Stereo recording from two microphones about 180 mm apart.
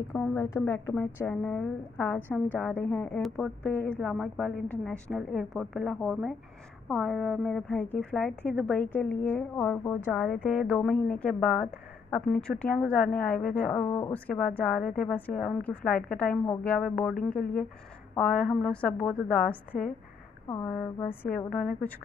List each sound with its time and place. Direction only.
0.1 s a woman's voice: 10° left (ahead or behind)
10.1 s a woman's voice: centre (ahead or behind)
18.1 s a woman's voice: 5° left (ahead or behind)
20.4 s a woman's voice: 15° left (ahead or behind)